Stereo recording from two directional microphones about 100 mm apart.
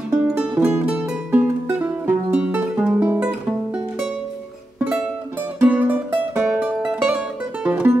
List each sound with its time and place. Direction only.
0.6 s music: 25° right (ahead or behind)
0.8 s music: 15° right (ahead or behind)
5.6 s music: 15° right (ahead or behind)